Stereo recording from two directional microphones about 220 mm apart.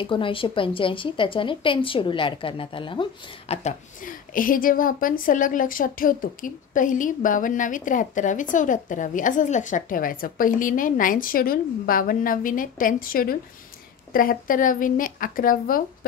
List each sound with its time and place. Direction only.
0.0 s a woman's voice: 25° left (ahead or behind); by 16.1 s 40° left (ahead or behind)